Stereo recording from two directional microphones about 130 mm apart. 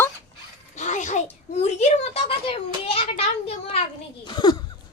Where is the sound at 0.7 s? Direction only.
65° left (ahead or behind); by 2.5 s 50° left (ahead or behind).